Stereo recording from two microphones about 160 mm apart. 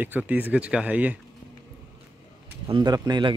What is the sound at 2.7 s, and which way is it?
Speech, 30° right (ahead or behind).